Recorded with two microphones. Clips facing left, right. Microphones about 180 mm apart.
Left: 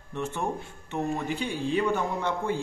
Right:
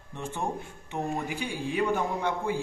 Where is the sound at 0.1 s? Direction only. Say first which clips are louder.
Left 2 dB; 15° right (ahead or behind).